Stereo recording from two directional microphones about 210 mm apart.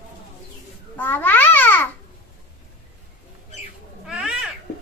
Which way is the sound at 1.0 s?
10° left (ahead or behind).